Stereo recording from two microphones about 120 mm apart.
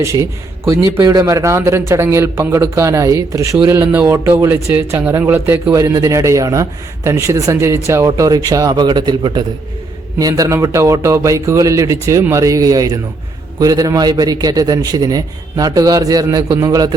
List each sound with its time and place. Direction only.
0.0 s speech: 25° right (ahead or behind)
5.7 s a man's voice: 30° right (ahead or behind)